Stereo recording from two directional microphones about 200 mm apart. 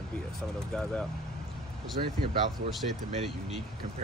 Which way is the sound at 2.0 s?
40° right (ahead or behind).